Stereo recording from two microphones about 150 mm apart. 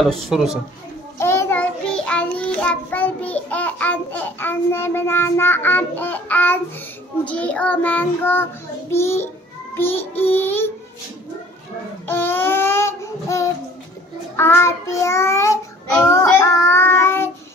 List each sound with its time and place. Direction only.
0.0 s speech: centre (ahead or behind)
1.1 s child singing: 20° left (ahead or behind)
12.1 s child singing: 15° left (ahead or behind)